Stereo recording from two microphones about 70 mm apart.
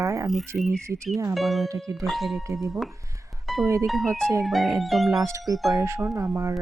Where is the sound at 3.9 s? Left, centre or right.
Centre.